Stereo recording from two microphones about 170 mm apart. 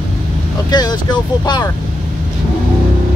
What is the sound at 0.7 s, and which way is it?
Speech, 25° left (ahead or behind).